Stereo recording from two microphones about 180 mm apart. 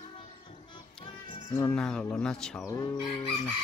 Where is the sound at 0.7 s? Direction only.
25° left (ahead or behind).